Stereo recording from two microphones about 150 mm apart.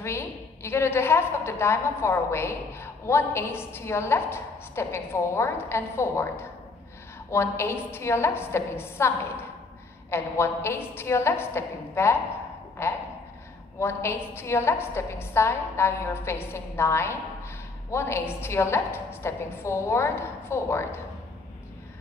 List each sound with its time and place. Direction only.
0.0 s a woman's voice: 15° left (ahead or behind)